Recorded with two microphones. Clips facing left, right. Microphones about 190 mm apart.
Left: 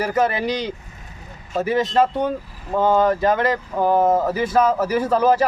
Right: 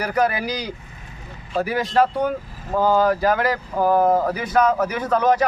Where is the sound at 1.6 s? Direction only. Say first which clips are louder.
Left 2 dB; 25° left (ahead or behind).